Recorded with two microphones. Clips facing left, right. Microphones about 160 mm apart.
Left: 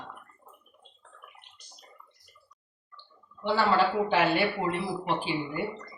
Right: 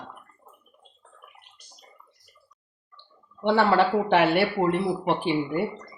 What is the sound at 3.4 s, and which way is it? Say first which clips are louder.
Speech: right 4 dB; 70° right (ahead or behind).